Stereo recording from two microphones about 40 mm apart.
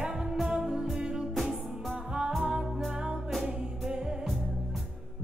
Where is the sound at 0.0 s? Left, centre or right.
Centre.